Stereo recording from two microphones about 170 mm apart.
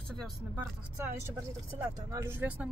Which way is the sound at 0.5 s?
15° right (ahead or behind).